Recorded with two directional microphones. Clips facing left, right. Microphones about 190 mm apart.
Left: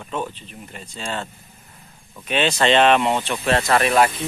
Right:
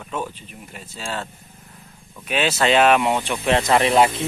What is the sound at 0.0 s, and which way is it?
Speech, 5° right (ahead or behind).